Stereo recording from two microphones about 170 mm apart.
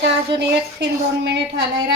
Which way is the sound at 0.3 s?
85° right.